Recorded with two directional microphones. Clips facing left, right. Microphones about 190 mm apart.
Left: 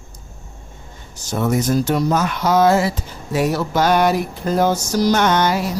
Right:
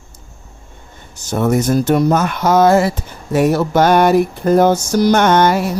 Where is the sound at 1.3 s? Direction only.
55° right (ahead or behind).